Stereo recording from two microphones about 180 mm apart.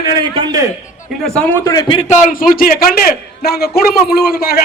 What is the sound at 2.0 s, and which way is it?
A man's voice, 40° left (ahead or behind).